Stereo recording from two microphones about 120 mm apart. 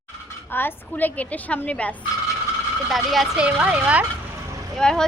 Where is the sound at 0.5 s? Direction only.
15° left (ahead or behind).